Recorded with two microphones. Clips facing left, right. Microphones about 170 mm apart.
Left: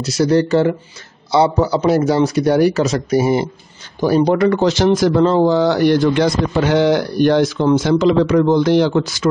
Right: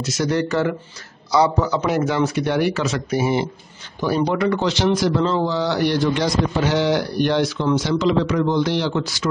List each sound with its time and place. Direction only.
0.0 s a man's voice: 35° left (ahead or behind); by 9.3 s 50° left (ahead or behind)